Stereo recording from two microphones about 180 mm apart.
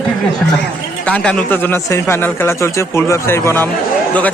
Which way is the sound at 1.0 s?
5° left (ahead or behind).